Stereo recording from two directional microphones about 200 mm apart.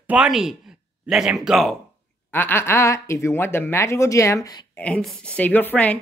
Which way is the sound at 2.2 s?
10° left (ahead or behind).